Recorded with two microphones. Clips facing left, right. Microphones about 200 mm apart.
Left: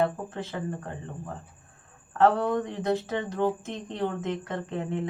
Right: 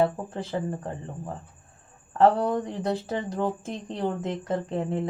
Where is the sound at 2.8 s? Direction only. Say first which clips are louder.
Left 1 dB; 35° right (ahead or behind).